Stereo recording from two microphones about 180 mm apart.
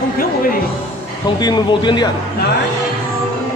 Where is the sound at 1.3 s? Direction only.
25° left (ahead or behind).